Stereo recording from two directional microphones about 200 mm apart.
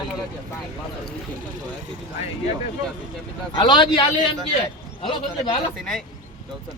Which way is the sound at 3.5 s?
25° left (ahead or behind).